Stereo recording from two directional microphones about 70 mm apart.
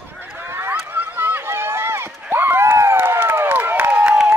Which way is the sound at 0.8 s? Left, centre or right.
Right.